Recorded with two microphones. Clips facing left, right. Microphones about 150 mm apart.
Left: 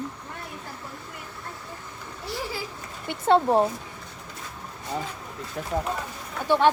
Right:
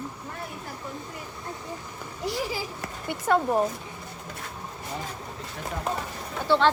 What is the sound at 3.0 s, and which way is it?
Speech, 25° left (ahead or behind).